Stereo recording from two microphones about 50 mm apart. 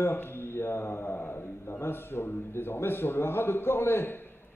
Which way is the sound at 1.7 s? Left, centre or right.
Left.